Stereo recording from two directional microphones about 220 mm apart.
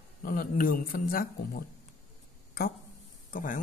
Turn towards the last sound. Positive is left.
turn(degrees=35)  # may be behind; listen again after turning